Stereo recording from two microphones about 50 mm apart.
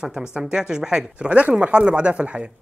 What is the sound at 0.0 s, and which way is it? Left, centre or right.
A man's voice, centre.